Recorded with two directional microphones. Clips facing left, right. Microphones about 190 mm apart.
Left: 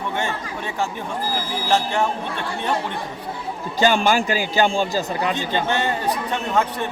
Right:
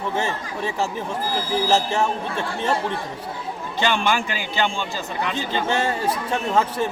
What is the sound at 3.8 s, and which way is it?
A man's voice, 40° left (ahead or behind).